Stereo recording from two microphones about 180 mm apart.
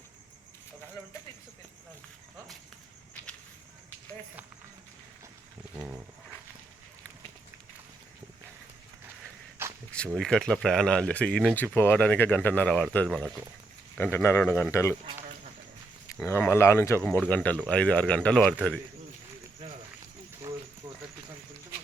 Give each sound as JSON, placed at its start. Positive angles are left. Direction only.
{"t": 5.7, "sound": "wild animals", "side_deg": -10}
{"t": 9.6, "sound": "a sound", "side_deg": -10}
{"t": 10.1, "sound": "speech", "side_deg": 5}
{"t": 14.0, "sound": "speech", "side_deg": 15}
{"t": 16.1, "sound": "speech", "side_deg": 15}